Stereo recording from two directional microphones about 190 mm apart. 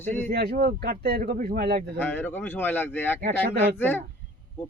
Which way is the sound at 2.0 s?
10° left (ahead or behind).